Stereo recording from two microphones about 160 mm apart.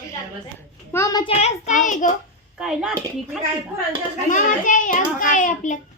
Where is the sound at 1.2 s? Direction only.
40° left (ahead or behind).